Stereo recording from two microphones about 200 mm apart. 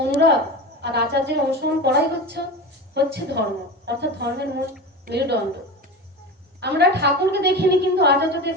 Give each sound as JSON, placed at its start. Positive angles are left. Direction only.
{"t": 0.0, "sound": "a sound", "side_deg": -55}
{"t": 0.8, "sound": "a woman's voice", "side_deg": -55}
{"t": 6.6, "sound": "a woman's voice", "side_deg": -55}